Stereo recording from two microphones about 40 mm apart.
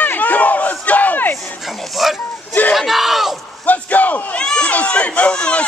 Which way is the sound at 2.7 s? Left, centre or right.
Centre.